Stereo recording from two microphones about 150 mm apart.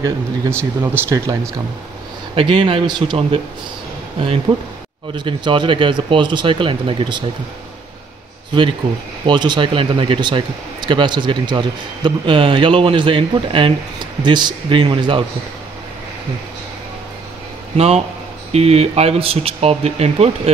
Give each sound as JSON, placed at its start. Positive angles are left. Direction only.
{"t": 0.0, "sound": "speech", "side_deg": -15}
{"t": 2.3, "sound": "speech", "side_deg": -35}
{"t": 4.5, "sound": "speech", "side_deg": -30}
{"t": 9.2, "sound": "speech", "side_deg": -30}
{"t": 17.7, "sound": "speech", "side_deg": -45}